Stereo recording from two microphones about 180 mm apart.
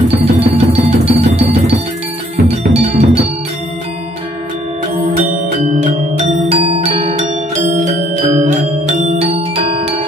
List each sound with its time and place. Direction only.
0.1 s music: 35° right (ahead or behind)
5.6 s music: 40° right (ahead or behind)